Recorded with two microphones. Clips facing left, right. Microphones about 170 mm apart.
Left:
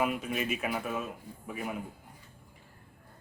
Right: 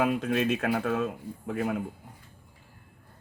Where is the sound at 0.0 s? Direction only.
85° right.